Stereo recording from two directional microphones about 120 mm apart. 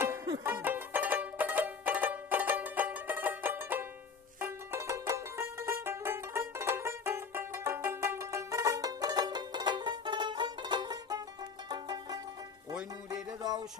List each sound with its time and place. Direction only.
0.4 s music: 20° right (ahead or behind); by 12.2 s 35° right (ahead or behind)
13.4 s music: 35° right (ahead or behind)